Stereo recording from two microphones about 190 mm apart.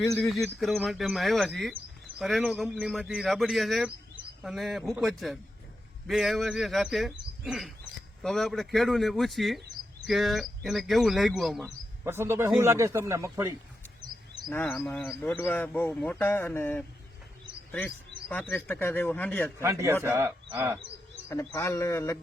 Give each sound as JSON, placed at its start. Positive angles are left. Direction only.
{"t": 0.2, "sound": "speech", "side_deg": 0}
{"t": 12.0, "sound": "speech", "side_deg": -10}
{"t": 14.5, "sound": "a man's voice", "side_deg": 10}
{"t": 19.6, "sound": "speech", "side_deg": -15}
{"t": 21.2, "sound": "a man's voice", "side_deg": 15}